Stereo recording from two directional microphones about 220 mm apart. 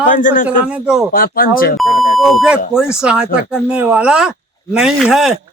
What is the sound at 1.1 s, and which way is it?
Speech, 40° left (ahead or behind).